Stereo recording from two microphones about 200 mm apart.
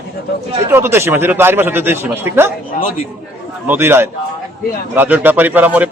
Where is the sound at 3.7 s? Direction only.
10° right (ahead or behind).